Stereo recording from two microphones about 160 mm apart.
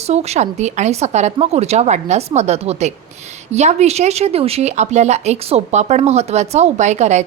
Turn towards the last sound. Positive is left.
turn(degrees=-45)  # may be behind; listen again after turning